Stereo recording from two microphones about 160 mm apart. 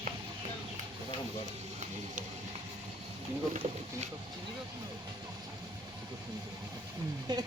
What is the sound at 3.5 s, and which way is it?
Speech, 45° right (ahead or behind).